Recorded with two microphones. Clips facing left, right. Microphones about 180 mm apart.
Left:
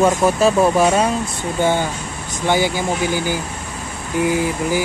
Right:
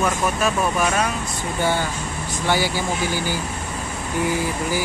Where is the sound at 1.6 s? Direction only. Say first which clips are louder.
Left 4 dB; 20° left (ahead or behind).